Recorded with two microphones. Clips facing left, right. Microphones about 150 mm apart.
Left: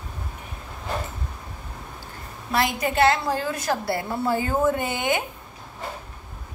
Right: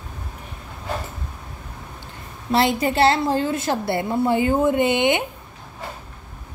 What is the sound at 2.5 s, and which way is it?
A woman's voice, 30° right (ahead or behind).